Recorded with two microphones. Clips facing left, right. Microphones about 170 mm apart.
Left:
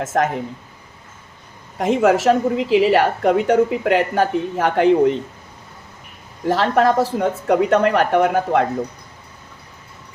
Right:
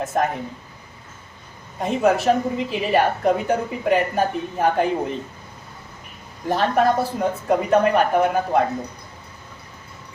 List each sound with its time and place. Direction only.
0.0 s a woman's voice: 90° left
1.8 s a woman's voice: 90° left
6.5 s a woman's voice: 90° left